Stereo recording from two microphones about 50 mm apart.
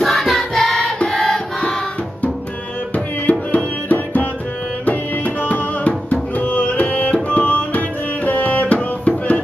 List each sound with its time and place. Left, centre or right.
0.0 s music: centre
3.3 s music: left